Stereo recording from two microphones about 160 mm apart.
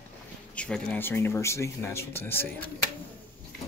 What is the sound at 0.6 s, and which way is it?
Speech, 5° left (ahead or behind).